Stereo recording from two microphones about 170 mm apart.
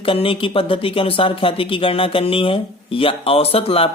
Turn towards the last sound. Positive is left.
turn(degrees=35)  # may be behind; listen again after turning